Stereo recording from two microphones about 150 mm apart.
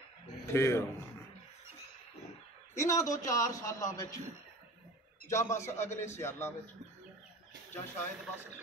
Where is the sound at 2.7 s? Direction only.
20° left (ahead or behind).